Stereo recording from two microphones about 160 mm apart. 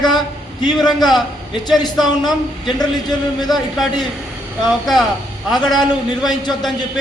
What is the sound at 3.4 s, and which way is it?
A man's voice, centre (ahead or behind).